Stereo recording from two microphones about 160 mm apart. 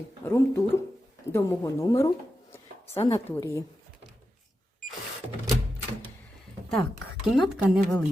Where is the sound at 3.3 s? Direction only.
20° left (ahead or behind).